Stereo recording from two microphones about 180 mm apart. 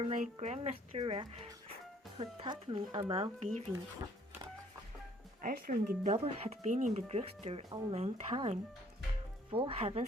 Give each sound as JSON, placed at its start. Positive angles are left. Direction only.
{"t": 0.1, "sound": "speech", "side_deg": -40}
{"t": 5.4, "sound": "speech", "side_deg": -50}
{"t": 6.0, "sound": "speech", "side_deg": -35}